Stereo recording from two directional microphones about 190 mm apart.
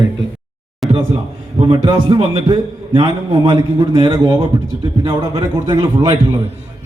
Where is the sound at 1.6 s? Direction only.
25° right (ahead or behind).